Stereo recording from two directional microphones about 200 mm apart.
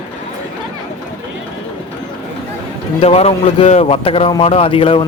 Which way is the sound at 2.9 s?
30° left (ahead or behind).